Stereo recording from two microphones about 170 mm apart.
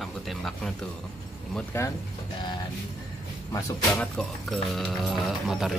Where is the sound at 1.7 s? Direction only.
15° left (ahead or behind).